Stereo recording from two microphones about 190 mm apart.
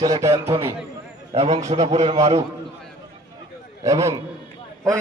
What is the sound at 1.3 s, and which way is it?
Speech, 35° right (ahead or behind).